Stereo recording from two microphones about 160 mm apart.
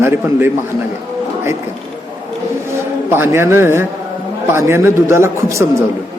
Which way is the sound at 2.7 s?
15° right (ahead or behind).